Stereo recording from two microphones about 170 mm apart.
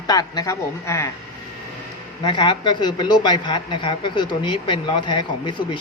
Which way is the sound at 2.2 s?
25° left (ahead or behind).